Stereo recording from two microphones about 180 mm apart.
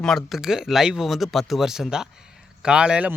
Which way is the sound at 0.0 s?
Centre (ahead or behind).